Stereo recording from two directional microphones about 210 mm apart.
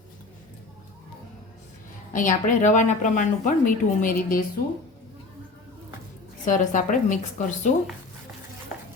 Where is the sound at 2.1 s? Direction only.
40° left (ahead or behind).